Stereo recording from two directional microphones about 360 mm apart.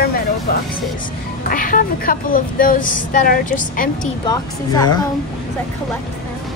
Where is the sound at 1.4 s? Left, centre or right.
Left.